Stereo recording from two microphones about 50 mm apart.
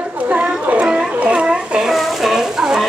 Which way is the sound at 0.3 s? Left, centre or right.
Right.